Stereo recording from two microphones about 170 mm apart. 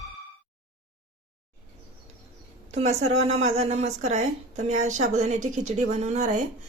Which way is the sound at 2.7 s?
40° right (ahead or behind).